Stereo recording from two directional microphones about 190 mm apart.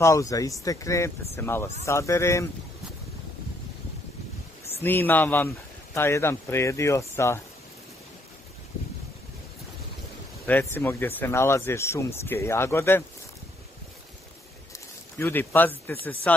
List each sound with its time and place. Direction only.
0.0 s speech: 15° left (ahead or behind)
4.8 s speech: 10° left (ahead or behind)
10.4 s speech: 10° left (ahead or behind)
15.1 s speech: 10° left (ahead or behind)